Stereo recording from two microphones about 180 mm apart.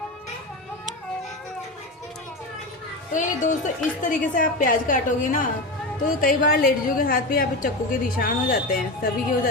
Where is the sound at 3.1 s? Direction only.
45° left (ahead or behind).